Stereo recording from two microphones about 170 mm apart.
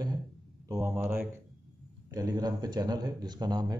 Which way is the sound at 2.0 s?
20° right (ahead or behind).